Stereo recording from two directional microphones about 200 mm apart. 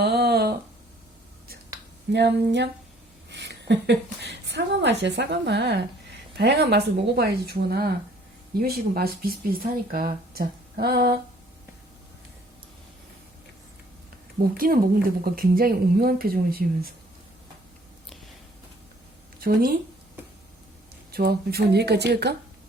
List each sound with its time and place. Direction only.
0.0 s a sound: 50° right (ahead or behind)
2.1 s a woman's voice: 60° right (ahead or behind)
14.5 s speech: 45° right (ahead or behind)
19.4 s speech: 45° right (ahead or behind)
21.1 s speech: 50° right (ahead or behind)